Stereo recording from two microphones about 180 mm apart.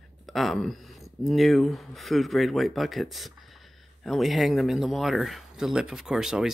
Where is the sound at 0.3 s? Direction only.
Centre (ahead or behind).